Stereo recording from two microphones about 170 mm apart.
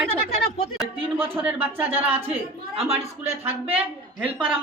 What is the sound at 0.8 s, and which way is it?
Speech, 10° right (ahead or behind).